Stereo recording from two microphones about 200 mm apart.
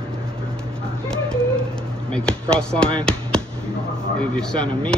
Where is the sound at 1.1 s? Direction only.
5° left (ahead or behind).